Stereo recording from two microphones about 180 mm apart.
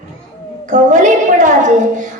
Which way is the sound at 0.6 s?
45° right (ahead or behind).